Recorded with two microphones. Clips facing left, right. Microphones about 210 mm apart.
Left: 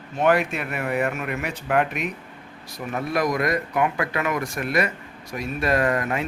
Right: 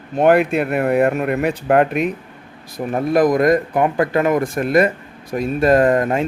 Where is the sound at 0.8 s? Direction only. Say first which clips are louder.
Right 8 dB; 55° right (ahead or behind).